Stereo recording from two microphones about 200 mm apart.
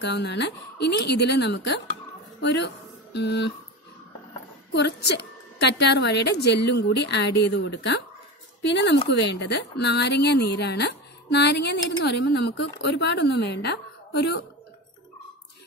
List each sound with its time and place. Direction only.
0.0 s a woman's voice: 60° left (ahead or behind)
4.7 s a woman's voice: 60° left (ahead or behind)